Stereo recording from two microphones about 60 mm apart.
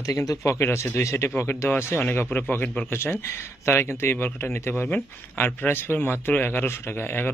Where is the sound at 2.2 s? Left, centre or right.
Left.